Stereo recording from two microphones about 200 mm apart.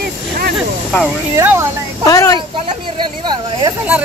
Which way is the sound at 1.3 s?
10° right (ahead or behind).